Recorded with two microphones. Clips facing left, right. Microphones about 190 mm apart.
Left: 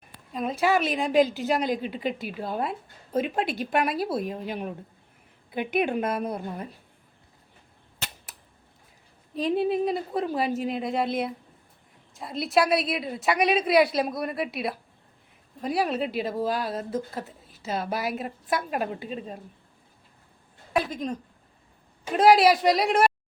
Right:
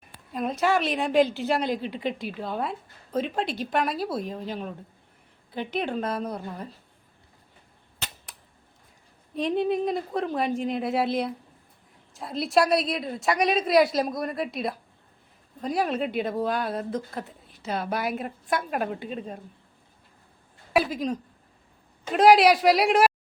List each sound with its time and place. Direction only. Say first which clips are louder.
0.9 s a woman's voice: even; centre (ahead or behind)
9.3 s speech: even; 5° left (ahead or behind)
20.7 s speech: right 3 dB; 5° right (ahead or behind)